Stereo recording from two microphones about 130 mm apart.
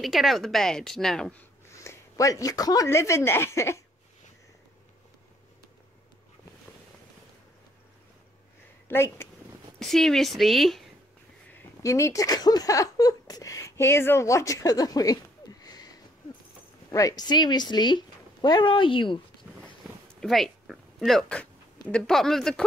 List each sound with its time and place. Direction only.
0.0 s speech: centre (ahead or behind)
1.7 s speech: 20° left (ahead or behind)
8.8 s speech: 20° left (ahead or behind)
9.8 s speech: 5° left (ahead or behind)
11.8 s speech: 25° left (ahead or behind); by 19.1 s 40° left (ahead or behind)
20.2 s speech: centre (ahead or behind)